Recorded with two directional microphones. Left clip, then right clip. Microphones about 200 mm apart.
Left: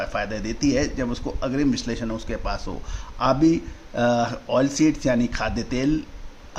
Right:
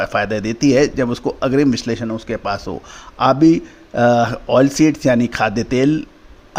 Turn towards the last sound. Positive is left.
turn(degrees=-35)  # may be behind; listen again after turning